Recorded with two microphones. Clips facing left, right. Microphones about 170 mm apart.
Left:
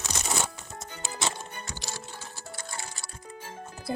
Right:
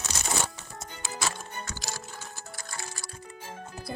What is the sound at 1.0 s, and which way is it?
Music, 25° left (ahead or behind).